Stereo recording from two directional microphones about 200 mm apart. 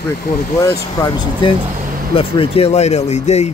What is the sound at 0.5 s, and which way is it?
Speech, 15° left (ahead or behind).